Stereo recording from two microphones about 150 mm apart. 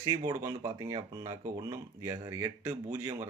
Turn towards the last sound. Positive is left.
turn(degrees=-15)  # may be behind; listen again after turning